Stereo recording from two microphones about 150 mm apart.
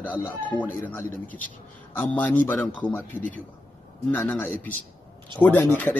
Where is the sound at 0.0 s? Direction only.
10° left (ahead or behind).